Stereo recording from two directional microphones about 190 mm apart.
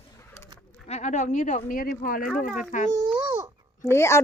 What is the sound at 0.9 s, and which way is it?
Speech, 40° left (ahead or behind).